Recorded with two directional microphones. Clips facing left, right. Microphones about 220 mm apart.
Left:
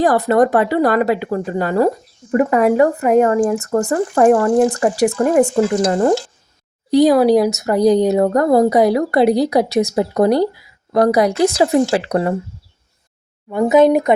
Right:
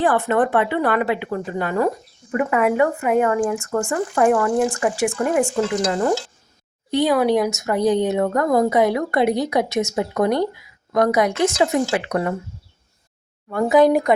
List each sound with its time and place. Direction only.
0.0 s speech: 40° left (ahead or behind)
13.5 s speech: 20° left (ahead or behind)